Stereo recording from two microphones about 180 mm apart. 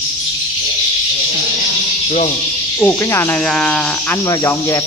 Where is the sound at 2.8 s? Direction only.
10° left (ahead or behind).